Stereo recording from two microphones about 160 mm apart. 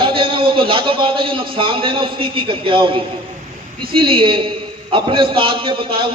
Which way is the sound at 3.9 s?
30° right (ahead or behind).